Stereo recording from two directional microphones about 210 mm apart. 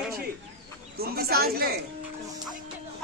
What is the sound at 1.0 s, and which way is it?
Speech, 45° right (ahead or behind).